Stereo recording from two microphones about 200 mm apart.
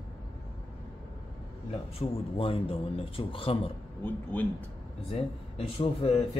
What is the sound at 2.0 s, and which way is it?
Speech, 30° left (ahead or behind).